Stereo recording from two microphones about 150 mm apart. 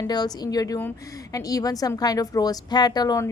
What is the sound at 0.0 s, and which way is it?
A woman's voice, 25° left (ahead or behind).